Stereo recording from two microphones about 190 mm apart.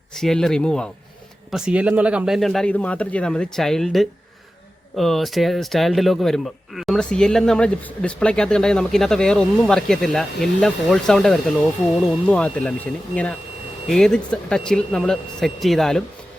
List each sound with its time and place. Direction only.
0.1 s speech: centre (ahead or behind)
13.8 s speech: 5° left (ahead or behind)